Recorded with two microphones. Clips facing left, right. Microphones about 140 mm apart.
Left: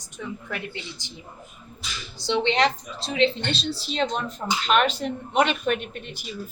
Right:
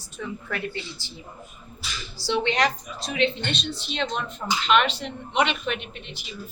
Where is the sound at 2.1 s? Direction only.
20° left (ahead or behind); by 6.2 s 45° left (ahead or behind).